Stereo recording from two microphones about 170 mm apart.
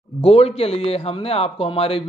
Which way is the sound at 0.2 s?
35° left (ahead or behind).